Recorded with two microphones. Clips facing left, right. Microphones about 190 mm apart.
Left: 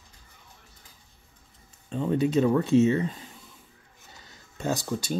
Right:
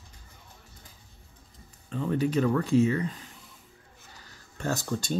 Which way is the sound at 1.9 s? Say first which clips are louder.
Left 3 dB; 25° left (ahead or behind).